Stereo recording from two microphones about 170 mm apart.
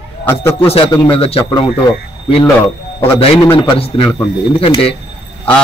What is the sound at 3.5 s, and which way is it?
A man's voice, 30° left (ahead or behind).